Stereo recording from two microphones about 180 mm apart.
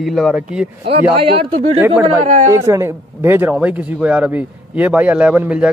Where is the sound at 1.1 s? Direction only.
30° right (ahead or behind).